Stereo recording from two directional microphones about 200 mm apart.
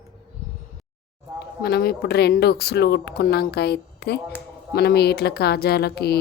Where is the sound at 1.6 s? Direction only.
50° left (ahead or behind).